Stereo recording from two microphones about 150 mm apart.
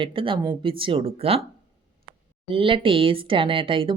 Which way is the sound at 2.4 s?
35° right (ahead or behind).